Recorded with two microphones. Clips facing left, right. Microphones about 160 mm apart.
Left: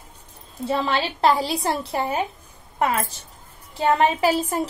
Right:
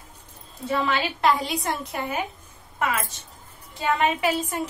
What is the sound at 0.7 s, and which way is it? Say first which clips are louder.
A woman's voice: left 1 dB; 30° left (ahead or behind).